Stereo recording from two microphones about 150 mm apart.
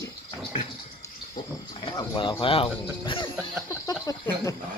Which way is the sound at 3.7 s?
25° left (ahead or behind).